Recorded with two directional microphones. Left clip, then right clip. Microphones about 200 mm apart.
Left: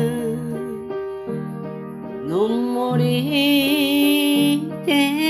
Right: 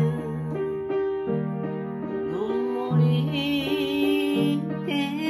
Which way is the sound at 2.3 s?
50° left (ahead or behind).